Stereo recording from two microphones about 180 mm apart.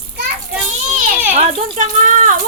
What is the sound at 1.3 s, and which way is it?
A woman's voice, 40° right (ahead or behind).